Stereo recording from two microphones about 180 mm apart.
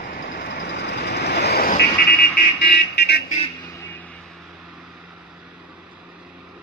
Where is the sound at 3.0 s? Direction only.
65° left (ahead or behind).